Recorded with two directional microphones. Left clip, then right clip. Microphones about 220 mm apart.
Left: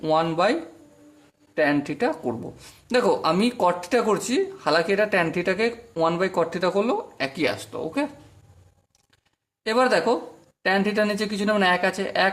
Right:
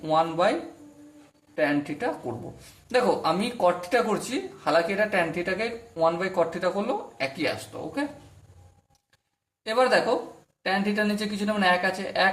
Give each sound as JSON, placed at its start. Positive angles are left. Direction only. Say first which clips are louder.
{"t": 0.0, "sound": "speech", "louder": "left 2 dB", "side_deg": 45}
{"t": 1.5, "sound": "speech", "louder": "left 4 dB", "side_deg": 40}
{"t": 9.6, "sound": "speech", "louder": "left 2 dB", "side_deg": 45}